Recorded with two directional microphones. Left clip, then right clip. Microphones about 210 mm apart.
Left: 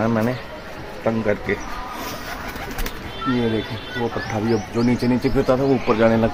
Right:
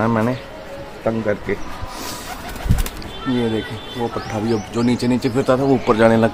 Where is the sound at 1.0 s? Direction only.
5° right (ahead or behind).